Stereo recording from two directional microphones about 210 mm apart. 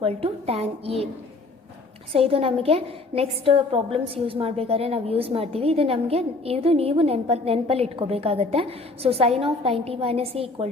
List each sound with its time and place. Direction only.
0.0 s a woman's voice: 30° right (ahead or behind)
2.1 s a woman's voice: 25° right (ahead or behind)